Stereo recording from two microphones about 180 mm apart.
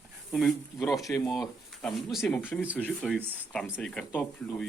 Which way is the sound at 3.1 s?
10° right (ahead or behind).